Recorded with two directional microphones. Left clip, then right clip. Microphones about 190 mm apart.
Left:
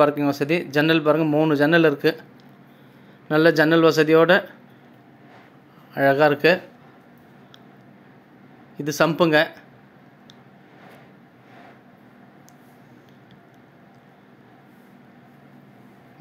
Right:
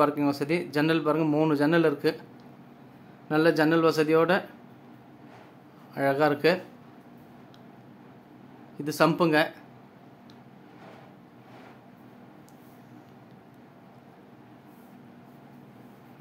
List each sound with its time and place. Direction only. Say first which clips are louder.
0.0 s a man's voice: left 6 dB; 15° left (ahead or behind)
3.3 s a man's voice: left 6 dB; 20° left (ahead or behind)
5.9 s a man's voice: left 7 dB; 15° left (ahead or behind)
8.7 s a man's voice: left 4 dB; 15° left (ahead or behind)